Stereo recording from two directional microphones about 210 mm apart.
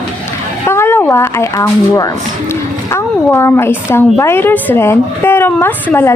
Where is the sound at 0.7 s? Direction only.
10° left (ahead or behind).